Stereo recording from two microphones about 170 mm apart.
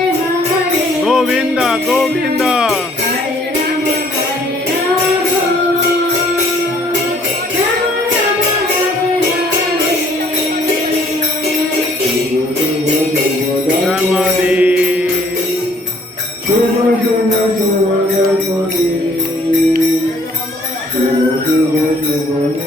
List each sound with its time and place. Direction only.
1.0 s jingle bell: 5° right (ahead or behind)
13.8 s music: 5° right (ahead or behind)